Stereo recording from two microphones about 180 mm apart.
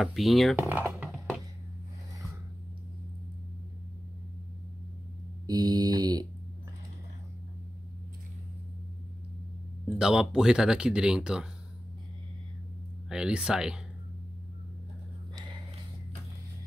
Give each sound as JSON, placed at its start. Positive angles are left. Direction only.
{"t": 0.0, "sound": "speech", "side_deg": 0}
{"t": 0.6, "sound": "speech", "side_deg": -10}
{"t": 5.5, "sound": "mantra", "side_deg": -20}
{"t": 9.9, "sound": "speech", "side_deg": -5}
{"t": 13.1, "sound": "speech", "side_deg": -5}